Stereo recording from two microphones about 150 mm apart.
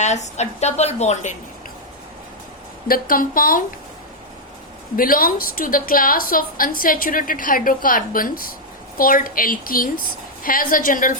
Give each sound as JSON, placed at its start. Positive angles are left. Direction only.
{"t": 0.0, "sound": "a woman's voice", "side_deg": 50}
{"t": 2.8, "sound": "a woman's voice", "side_deg": 75}
{"t": 4.9, "sound": "a woman's voice", "side_deg": 70}